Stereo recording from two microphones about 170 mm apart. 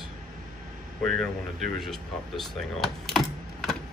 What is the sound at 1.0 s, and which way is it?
Speech, centre (ahead or behind).